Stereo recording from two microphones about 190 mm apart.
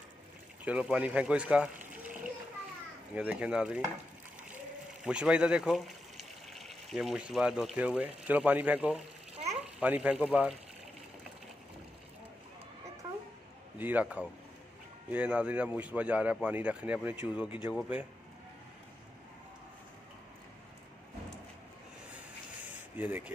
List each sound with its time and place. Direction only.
0.7 s speech: 5° right (ahead or behind)
3.2 s speech: 5° right (ahead or behind)
5.0 s a child's voice: 5° right (ahead or behind)
13.7 s speech: 10° right (ahead or behind)
22.7 s a sound: 10° right (ahead or behind)